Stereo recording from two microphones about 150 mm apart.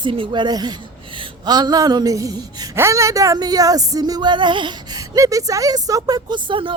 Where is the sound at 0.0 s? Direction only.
35° right (ahead or behind).